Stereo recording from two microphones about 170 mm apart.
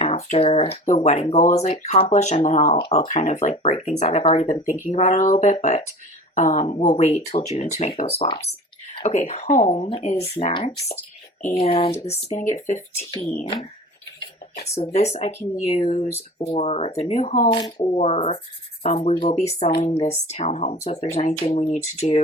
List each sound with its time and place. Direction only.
0.0 s speech: 40° left (ahead or behind)
14.2 s dishes: 75° left (ahead or behind)
14.9 s speech: 40° left (ahead or behind)